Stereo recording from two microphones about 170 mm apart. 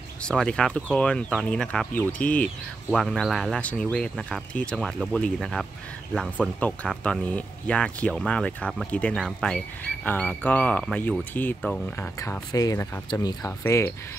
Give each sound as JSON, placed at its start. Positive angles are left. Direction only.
{"t": 0.2, "sound": "speech", "side_deg": 5}
{"t": 12.2, "sound": "speech", "side_deg": 20}